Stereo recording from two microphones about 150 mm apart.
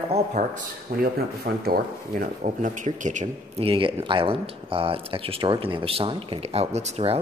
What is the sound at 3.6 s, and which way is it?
Speech, 35° right (ahead or behind).